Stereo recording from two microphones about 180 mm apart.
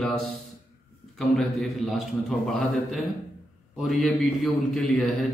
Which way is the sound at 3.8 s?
Centre (ahead or behind).